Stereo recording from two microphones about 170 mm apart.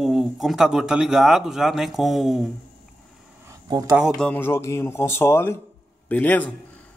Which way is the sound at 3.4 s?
25° right (ahead or behind).